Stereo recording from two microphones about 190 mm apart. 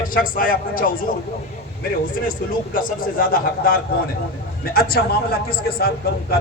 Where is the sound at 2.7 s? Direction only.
50° left (ahead or behind).